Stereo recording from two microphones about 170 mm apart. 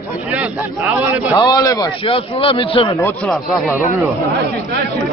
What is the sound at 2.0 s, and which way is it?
Speech, 30° left (ahead or behind).